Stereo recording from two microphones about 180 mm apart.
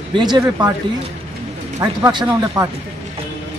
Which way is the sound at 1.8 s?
20° right (ahead or behind).